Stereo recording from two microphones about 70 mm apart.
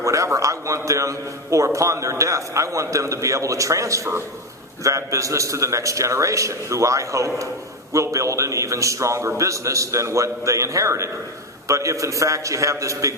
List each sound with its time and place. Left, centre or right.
0.0 s a man's voice: right